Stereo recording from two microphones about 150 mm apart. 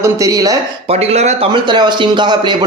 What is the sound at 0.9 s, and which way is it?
Speech, 45° right (ahead or behind).